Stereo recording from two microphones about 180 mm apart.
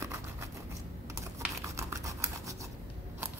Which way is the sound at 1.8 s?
15° right (ahead or behind).